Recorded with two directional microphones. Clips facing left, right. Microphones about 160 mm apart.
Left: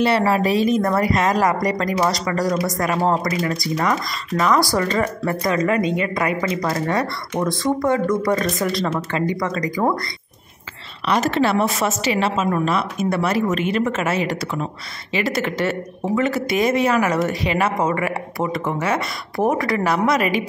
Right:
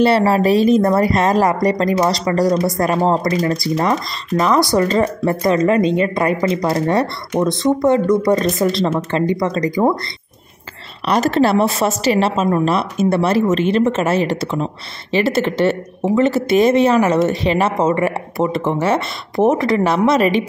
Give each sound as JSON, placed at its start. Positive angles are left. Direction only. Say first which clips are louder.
{"t": 0.0, "sound": "a woman's voice", "louder": "right 4 dB", "side_deg": -30}
{"t": 11.1, "sound": "a woman's voice", "louder": "right 4 dB", "side_deg": -35}